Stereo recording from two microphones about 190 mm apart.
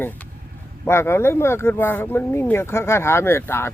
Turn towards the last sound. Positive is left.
turn(degrees=10)  # may be behind; listen again after turning